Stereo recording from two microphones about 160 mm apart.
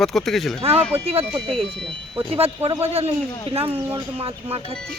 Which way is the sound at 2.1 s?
35° right (ahead or behind).